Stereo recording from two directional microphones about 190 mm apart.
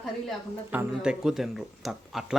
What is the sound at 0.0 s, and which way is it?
Speech, centre (ahead or behind).